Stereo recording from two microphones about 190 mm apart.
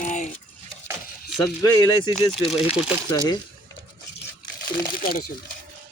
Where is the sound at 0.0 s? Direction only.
40° left (ahead or behind).